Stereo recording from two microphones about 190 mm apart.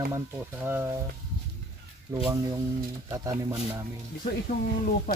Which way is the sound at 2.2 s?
20° right (ahead or behind).